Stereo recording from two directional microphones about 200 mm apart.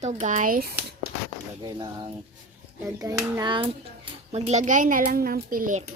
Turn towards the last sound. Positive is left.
turn(degrees=-45)  # may be behind; listen again after turning